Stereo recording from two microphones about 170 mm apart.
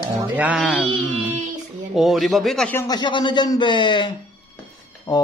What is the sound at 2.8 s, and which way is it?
Speech, 25° left (ahead or behind).